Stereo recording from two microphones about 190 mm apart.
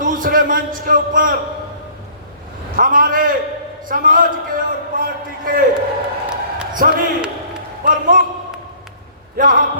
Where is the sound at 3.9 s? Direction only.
45° right (ahead or behind).